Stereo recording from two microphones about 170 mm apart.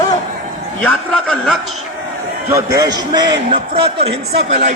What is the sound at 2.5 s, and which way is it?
A man's voice, 20° right (ahead or behind).